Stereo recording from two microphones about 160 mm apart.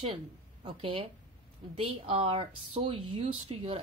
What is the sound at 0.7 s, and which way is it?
A woman's voice, 35° right (ahead or behind).